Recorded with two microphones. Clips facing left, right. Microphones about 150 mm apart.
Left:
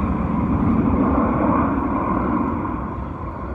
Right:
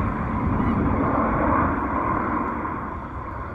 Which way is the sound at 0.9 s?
10° left (ahead or behind).